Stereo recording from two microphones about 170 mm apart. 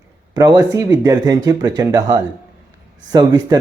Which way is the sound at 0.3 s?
20° right (ahead or behind).